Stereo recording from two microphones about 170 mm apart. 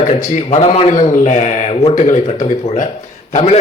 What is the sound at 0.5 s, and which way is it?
A man's voice, 40° left (ahead or behind).